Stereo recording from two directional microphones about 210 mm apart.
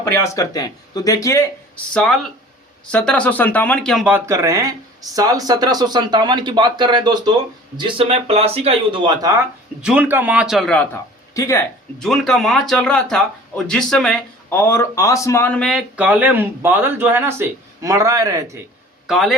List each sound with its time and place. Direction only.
0.0 s a man's voice: 10° left (ahead or behind); by 9.3 s 20° right (ahead or behind)
9.8 s a man's voice: 5° right (ahead or behind)
11.3 s speech: 15° left (ahead or behind)
11.9 s a man's voice: centre (ahead or behind); by 18.6 s 15° right (ahead or behind)
19.0 s a man's voice: centre (ahead or behind)